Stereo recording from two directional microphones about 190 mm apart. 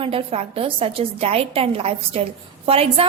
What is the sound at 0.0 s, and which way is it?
A woman's voice, 30° right (ahead or behind).